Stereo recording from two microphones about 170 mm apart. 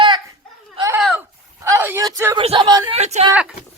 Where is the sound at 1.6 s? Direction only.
15° right (ahead or behind).